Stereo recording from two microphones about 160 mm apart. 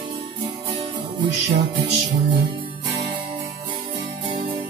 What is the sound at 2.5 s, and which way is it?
Music, 35° right (ahead or behind).